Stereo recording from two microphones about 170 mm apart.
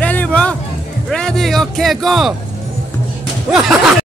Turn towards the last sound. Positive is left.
turn(degrees=-5)  # may be behind; listen again after turning